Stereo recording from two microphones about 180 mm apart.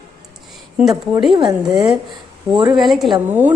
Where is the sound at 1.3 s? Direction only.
25° right (ahead or behind).